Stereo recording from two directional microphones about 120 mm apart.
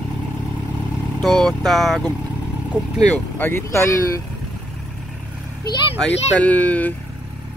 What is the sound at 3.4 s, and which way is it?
Speech, 20° left (ahead or behind).